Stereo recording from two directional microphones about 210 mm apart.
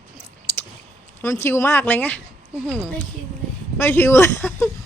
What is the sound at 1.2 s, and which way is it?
A man's voice, 15° left (ahead or behind).